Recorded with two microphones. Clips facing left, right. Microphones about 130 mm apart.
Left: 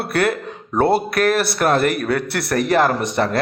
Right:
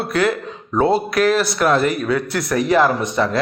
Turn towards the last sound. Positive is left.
turn(degrees=60)  # may be behind; listen again after turning